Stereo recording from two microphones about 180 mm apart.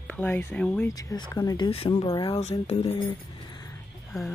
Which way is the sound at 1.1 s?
20° left (ahead or behind).